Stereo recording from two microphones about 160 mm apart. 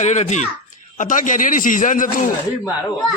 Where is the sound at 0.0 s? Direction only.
45° left (ahead or behind).